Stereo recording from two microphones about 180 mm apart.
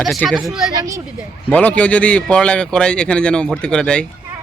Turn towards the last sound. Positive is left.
turn(degrees=5)  # may be behind; listen again after turning